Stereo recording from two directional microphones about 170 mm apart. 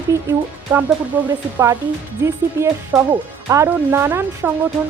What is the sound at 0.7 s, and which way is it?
Music, 10° right (ahead or behind).